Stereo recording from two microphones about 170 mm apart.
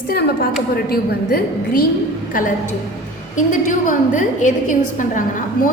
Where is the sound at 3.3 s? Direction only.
50° left (ahead or behind).